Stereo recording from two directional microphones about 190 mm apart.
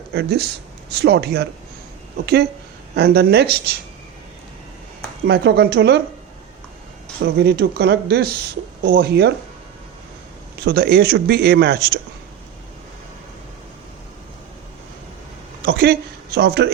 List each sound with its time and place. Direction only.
0.1 s speech: 60° right (ahead or behind)
5.3 s speech: 60° right (ahead or behind)
7.3 s speech: 60° right (ahead or behind)
10.6 s speech: 55° right (ahead or behind)
15.6 s speech: 55° right (ahead or behind)